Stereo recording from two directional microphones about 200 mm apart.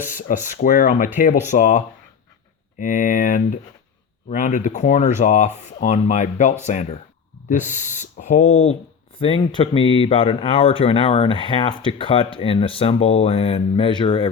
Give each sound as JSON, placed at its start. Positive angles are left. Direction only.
{"t": 0.1, "sound": "speech", "side_deg": 40}